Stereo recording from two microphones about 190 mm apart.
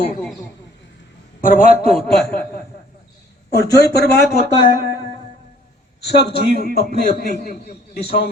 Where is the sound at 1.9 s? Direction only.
Centre (ahead or behind).